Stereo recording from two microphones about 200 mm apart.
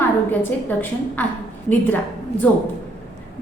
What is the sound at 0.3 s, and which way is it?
Speech, 10° left (ahead or behind).